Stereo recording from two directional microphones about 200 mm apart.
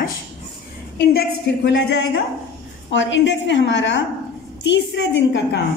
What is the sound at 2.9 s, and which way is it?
A woman's voice, 65° left (ahead or behind).